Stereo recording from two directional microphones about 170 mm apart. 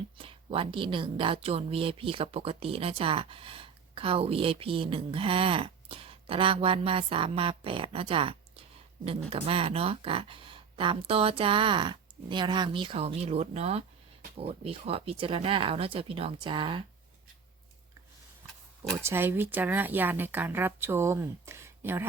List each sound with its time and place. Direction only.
0.2 s speech: 30° right (ahead or behind)
19.0 s a woman's voice: 15° right (ahead or behind)